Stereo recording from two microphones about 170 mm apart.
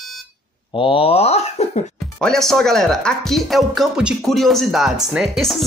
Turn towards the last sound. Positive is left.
turn(degrees=0)  # may be behind; listen again after turning